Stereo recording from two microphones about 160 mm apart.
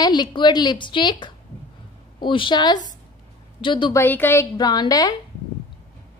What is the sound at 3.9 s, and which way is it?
A woman's voice, 15° left (ahead or behind).